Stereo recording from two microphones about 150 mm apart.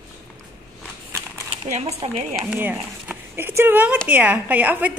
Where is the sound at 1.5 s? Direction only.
45° right (ahead or behind).